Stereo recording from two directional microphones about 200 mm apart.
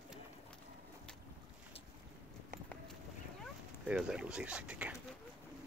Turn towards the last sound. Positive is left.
turn(degrees=-5)  # may be behind; listen again after turning